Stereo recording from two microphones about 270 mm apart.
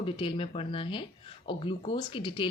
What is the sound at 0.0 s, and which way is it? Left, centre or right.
Speech, centre.